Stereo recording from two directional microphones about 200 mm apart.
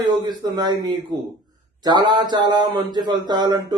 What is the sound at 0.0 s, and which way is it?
Speech, 20° right (ahead or behind).